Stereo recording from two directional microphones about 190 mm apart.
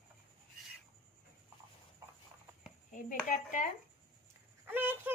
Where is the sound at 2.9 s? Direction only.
40° left (ahead or behind).